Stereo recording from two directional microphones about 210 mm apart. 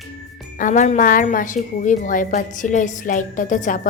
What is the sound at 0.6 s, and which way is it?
A woman's voice, 35° left (ahead or behind).